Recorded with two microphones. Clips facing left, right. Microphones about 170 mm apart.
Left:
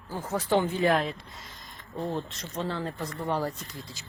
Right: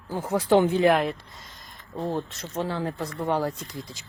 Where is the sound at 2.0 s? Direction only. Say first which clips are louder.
Right 3 dB; 25° right (ahead or behind).